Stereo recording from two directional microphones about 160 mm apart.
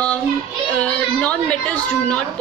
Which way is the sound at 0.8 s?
10° left (ahead or behind).